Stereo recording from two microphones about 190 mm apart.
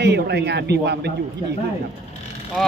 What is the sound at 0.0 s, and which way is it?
Speech, 60° right (ahead or behind).